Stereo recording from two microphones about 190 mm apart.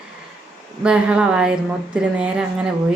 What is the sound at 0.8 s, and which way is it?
A woman's voice, 5° right (ahead or behind).